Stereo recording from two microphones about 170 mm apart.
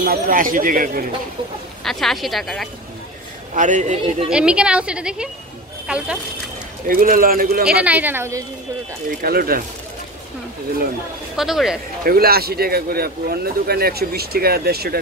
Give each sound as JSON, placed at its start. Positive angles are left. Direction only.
{"t": 0.0, "sound": "a man's voice", "side_deg": -55}
{"t": 1.9, "sound": "a woman's voice", "side_deg": 0}
{"t": 3.5, "sound": "a man's voice", "side_deg": -45}
{"t": 4.3, "sound": "a woman's voice", "side_deg": -5}
{"t": 6.9, "sound": "a man's voice", "side_deg": -55}
{"t": 7.8, "sound": "speech", "side_deg": -10}
{"t": 9.2, "sound": "a man's voice", "side_deg": -60}
{"t": 11.3, "sound": "a woman's voice", "side_deg": 0}
{"t": 12.0, "sound": "a man's voice", "side_deg": -60}